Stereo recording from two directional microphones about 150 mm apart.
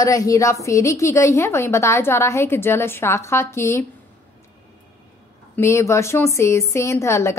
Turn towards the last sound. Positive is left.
turn(degrees=20)  # may be behind; listen again after turning